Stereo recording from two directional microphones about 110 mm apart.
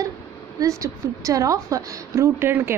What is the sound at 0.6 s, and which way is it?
A woman's voice, 30° right (ahead or behind).